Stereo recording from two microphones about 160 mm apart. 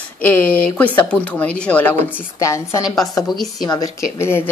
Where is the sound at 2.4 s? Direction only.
20° left (ahead or behind).